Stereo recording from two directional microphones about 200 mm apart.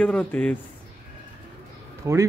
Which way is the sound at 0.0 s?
5° left (ahead or behind).